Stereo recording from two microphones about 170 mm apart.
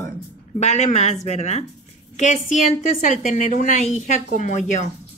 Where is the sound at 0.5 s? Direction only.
40° left (ahead or behind).